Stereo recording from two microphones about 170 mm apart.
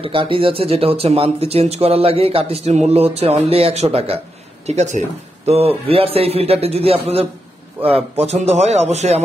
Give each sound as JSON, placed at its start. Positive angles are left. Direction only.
{"t": 0.0, "sound": "speech", "side_deg": -30}